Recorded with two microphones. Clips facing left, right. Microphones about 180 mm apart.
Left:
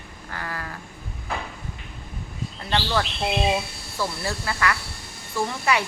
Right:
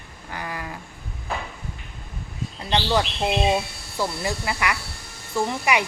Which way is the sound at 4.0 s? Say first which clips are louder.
Right 2 dB; 15° right (ahead or behind).